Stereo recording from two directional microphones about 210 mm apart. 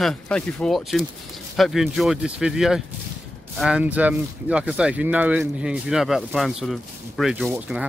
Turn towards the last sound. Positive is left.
turn(degrees=-5)  # may be behind; listen again after turning